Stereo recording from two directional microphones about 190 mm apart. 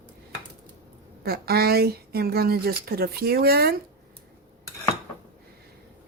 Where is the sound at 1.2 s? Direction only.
55° right (ahead or behind).